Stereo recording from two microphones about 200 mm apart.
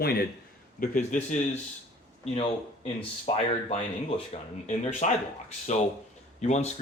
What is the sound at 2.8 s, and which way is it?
Speech, 30° left (ahead or behind).